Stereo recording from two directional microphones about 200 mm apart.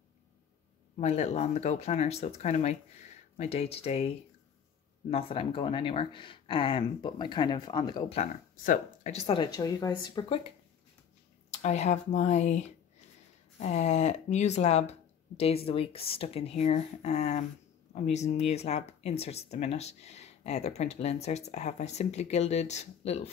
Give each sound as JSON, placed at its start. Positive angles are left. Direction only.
{"t": 0.9, "sound": "speech", "side_deg": 35}
{"t": 5.1, "sound": "speech", "side_deg": 25}
{"t": 8.6, "sound": "speech", "side_deg": 40}
{"t": 11.5, "sound": "speech", "side_deg": 35}